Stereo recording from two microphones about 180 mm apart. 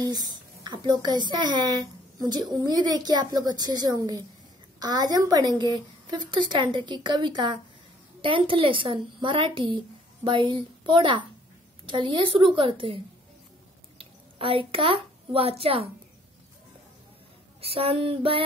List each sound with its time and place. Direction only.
0.0 s a woman's voice: 20° right (ahead or behind)
17.6 s female singing: 30° right (ahead or behind)